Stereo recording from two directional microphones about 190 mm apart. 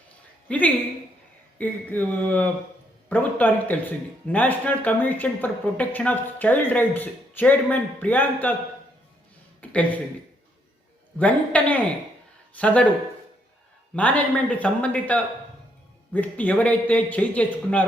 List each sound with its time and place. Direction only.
0.4 s speech: 10° left (ahead or behind)
9.6 s speech: 5° left (ahead or behind)
11.2 s speech: 5° left (ahead or behind)
13.9 s speech: 5° left (ahead or behind)